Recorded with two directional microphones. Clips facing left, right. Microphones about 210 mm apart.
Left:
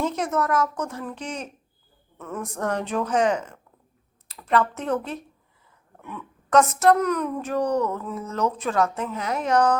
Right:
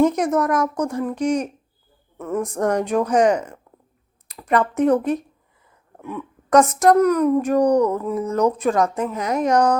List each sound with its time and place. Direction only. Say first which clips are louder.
0.0 s a woman's voice: right 7 dB; 15° right (ahead or behind)